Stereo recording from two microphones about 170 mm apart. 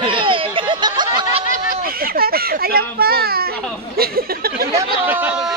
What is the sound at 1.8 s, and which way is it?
A child's voice, 60° right (ahead or behind).